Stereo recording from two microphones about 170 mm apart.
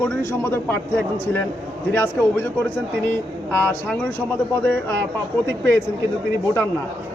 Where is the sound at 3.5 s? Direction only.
10° left (ahead or behind).